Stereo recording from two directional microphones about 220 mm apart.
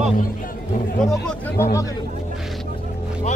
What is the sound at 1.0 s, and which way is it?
Speech, centre (ahead or behind).